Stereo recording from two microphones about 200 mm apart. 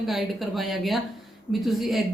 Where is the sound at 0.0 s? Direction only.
Centre (ahead or behind).